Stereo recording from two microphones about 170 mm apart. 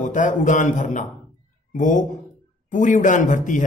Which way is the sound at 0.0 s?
50° left (ahead or behind).